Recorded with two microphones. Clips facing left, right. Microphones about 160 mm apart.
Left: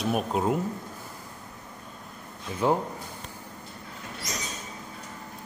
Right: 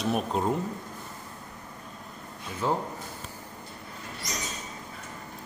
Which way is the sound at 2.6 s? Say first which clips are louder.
Left 4 dB; 15° left (ahead or behind).